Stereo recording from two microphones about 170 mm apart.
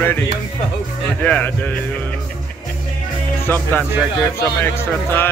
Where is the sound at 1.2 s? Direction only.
10° left (ahead or behind).